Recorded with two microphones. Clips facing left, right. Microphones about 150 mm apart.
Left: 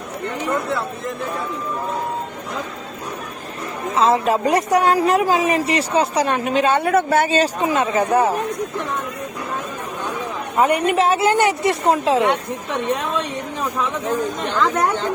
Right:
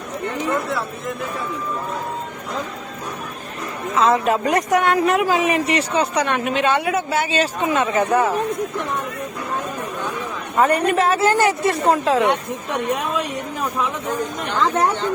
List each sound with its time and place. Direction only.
3.9 s a woman's voice: 30° left (ahead or behind)
10.6 s a woman's voice: 15° left (ahead or behind)
12.2 s speech: 15° right (ahead or behind)